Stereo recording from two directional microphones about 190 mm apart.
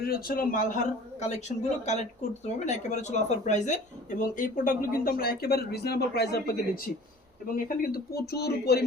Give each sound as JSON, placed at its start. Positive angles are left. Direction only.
{"t": 0.0, "sound": "speech", "side_deg": 55}